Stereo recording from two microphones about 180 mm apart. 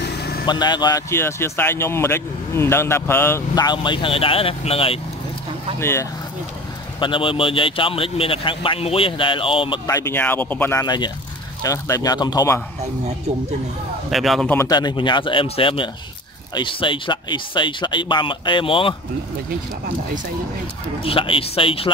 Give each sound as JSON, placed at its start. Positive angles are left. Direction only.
{"t": 0.5, "sound": "speech", "side_deg": 25}
{"t": 5.8, "sound": "speech", "side_deg": 15}
{"t": 7.0, "sound": "speech", "side_deg": 30}
{"t": 9.8, "sound": "speech", "side_deg": 15}
{"t": 14.1, "sound": "a man's voice", "side_deg": 0}
{"t": 14.5, "sound": "speech", "side_deg": 20}
{"t": 21.0, "sound": "speech", "side_deg": 30}